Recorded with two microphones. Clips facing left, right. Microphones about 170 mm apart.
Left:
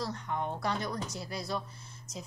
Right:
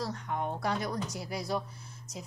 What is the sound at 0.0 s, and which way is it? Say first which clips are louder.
Speech: right 1 dB; 5° right (ahead or behind).